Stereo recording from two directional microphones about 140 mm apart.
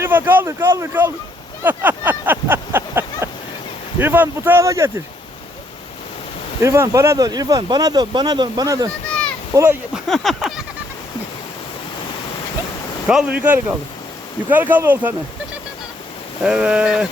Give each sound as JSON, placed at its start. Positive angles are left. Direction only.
{"t": 0.0, "sound": "speech", "side_deg": -15}
{"t": 1.6, "sound": "a sound", "side_deg": -10}
{"t": 3.9, "sound": "speech", "side_deg": -15}
{"t": 6.6, "sound": "speech", "side_deg": -20}
{"t": 9.0, "sound": "a sound", "side_deg": 5}
{"t": 9.5, "sound": "speech", "side_deg": -20}
{"t": 9.9, "sound": "speech", "side_deg": 0}
{"t": 13.1, "sound": "speech", "side_deg": -10}
{"t": 16.4, "sound": "speech", "side_deg": -5}